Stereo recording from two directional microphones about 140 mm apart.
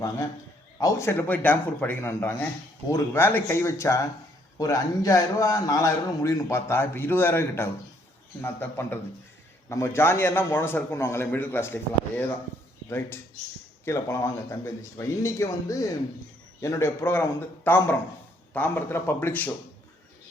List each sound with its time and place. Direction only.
0.8 s a man's voice: 20° left (ahead or behind)
13.8 s a man's voice: 20° left (ahead or behind)